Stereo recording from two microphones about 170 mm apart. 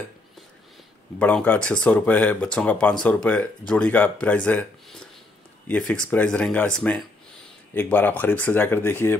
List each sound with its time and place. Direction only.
1.2 s speech: 10° left (ahead or behind)